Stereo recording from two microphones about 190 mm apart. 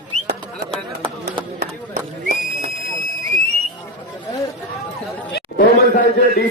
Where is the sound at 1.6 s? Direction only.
50° right (ahead or behind).